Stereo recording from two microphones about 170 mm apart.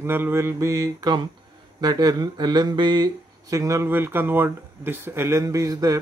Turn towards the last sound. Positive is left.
turn(degrees=-20)  # may be behind; listen again after turning